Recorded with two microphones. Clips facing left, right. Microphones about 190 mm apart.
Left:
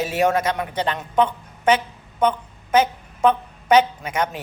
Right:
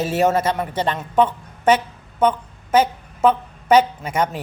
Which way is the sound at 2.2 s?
10° right (ahead or behind).